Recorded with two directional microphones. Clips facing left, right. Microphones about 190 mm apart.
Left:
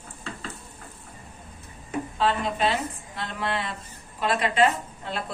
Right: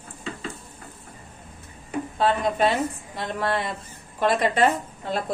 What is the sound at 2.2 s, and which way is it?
Speech, 50° right (ahead or behind).